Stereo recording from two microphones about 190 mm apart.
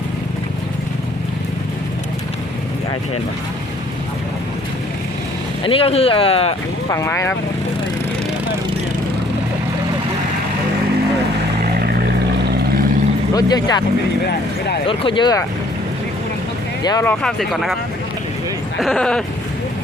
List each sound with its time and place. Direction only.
5.6 s speech: 30° left (ahead or behind)
6.9 s speech: 15° left (ahead or behind)
13.3 s speech: 20° left (ahead or behind)
14.8 s speech: 25° left (ahead or behind)
16.8 s speech: 20° left (ahead or behind)
17.1 s speech: centre (ahead or behind)
18.8 s speech: centre (ahead or behind)